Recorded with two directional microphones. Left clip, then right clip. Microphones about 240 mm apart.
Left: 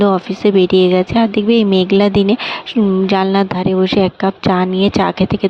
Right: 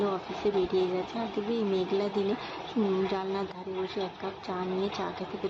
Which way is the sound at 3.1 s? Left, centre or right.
Left.